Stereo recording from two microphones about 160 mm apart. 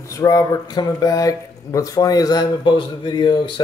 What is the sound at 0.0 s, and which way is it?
Speech, 20° left (ahead or behind).